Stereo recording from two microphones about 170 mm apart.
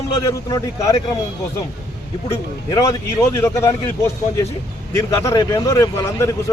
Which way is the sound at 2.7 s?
15° left (ahead or behind).